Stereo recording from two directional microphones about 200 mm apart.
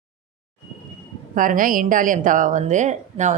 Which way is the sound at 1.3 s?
40° right (ahead or behind).